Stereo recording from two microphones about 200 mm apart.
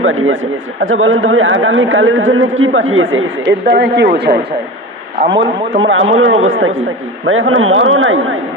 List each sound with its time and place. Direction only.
0.0 s a man's voice: 80° right
3.7 s speech: 60° right (ahead or behind)
5.4 s a man's voice: 70° right (ahead or behind)
6.1 s a man's voice: 85° right